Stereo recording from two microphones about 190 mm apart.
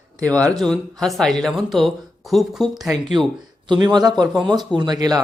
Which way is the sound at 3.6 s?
25° right (ahead or behind).